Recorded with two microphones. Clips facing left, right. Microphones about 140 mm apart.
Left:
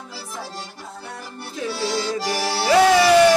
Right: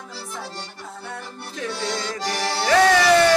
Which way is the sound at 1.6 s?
5° left (ahead or behind).